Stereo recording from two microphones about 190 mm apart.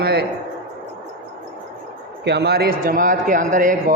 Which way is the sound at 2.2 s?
60° right (ahead or behind).